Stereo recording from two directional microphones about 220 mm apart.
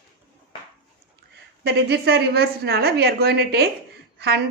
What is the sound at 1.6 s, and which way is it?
A woman's voice, 45° right (ahead or behind).